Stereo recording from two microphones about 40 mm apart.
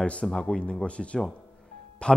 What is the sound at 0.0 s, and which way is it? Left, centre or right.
A man's voice, left.